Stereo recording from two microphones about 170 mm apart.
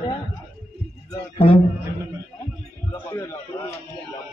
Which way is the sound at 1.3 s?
35° left (ahead or behind).